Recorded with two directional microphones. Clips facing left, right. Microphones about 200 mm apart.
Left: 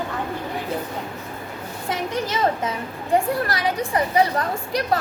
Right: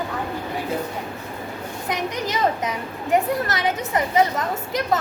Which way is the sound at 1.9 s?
15° right (ahead or behind).